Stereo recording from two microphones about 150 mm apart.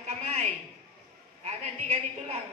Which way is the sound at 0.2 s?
45° right (ahead or behind).